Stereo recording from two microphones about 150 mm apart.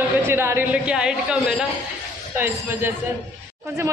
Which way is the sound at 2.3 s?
15° right (ahead or behind).